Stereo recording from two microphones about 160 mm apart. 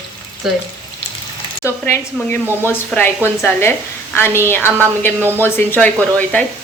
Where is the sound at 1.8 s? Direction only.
15° left (ahead or behind).